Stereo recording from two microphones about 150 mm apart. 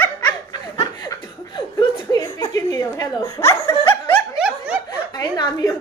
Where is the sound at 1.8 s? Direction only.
25° left (ahead or behind).